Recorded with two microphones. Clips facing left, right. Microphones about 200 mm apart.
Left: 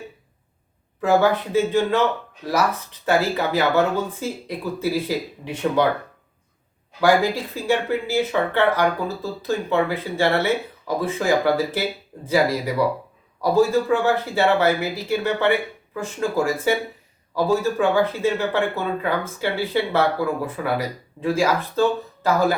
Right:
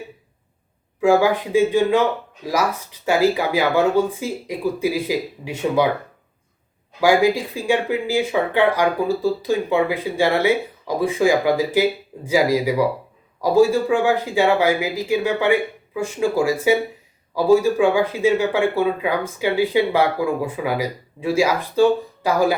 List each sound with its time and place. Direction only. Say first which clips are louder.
1.0 s speech: right 2 dB; 10° right (ahead or behind)
7.0 s speech: right 2 dB; 10° right (ahead or behind)